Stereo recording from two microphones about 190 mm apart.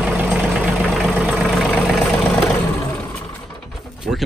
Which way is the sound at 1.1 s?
10° right (ahead or behind).